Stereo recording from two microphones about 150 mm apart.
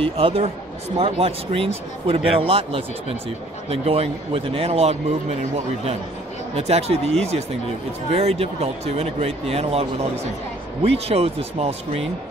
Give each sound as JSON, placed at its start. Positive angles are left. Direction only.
{"t": 0.0, "sound": "speech", "side_deg": -40}
{"t": 6.5, "sound": "speech", "side_deg": -45}